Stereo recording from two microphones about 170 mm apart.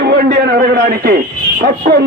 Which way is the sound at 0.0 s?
75° right (ahead or behind).